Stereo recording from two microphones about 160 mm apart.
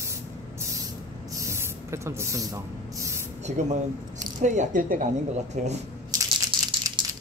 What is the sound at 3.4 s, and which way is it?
Speech, 50° right (ahead or behind).